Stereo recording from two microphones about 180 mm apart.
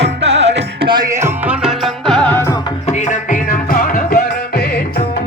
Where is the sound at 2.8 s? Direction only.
40° left (ahead or behind).